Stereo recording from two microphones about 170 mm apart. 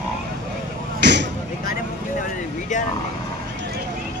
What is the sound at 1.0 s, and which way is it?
Vehicle, 90° right.